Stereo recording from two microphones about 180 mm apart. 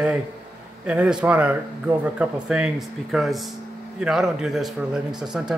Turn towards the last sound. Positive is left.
turn(degrees=-5)  # may be behind; listen again after turning